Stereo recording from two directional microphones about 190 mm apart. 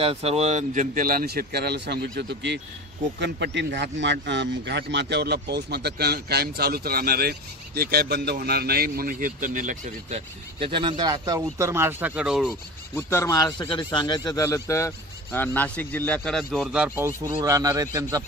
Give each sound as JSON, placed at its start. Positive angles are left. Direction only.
{"t": 0.0, "sound": "speech", "side_deg": -30}
{"t": 12.9, "sound": "a man's voice", "side_deg": 15}